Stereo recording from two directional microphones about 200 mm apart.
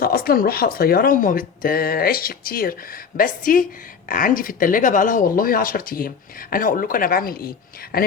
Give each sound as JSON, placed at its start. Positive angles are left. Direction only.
{"t": 0.0, "sound": "speech", "side_deg": 50}